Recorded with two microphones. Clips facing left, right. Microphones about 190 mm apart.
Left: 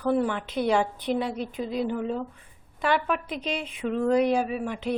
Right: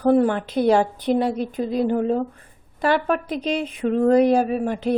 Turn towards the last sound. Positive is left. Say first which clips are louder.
# right 7 dB
turn(degrees=-40)  # may be behind; listen again after turning